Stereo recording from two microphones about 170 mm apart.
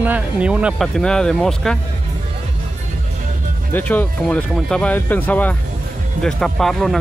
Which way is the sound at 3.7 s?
10° left (ahead or behind).